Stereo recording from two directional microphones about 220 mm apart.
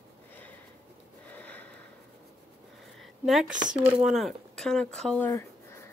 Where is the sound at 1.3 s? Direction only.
5° left (ahead or behind).